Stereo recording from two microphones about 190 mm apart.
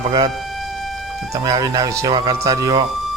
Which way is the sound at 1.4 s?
20° right (ahead or behind).